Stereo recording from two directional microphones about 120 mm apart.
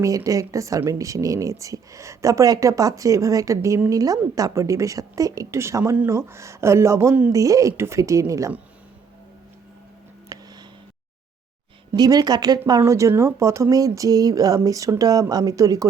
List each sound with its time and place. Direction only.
0.3 s speech: 25° right (ahead or behind)
10.3 s a sound: 30° right (ahead or behind)
11.9 s speech: 35° right (ahead or behind)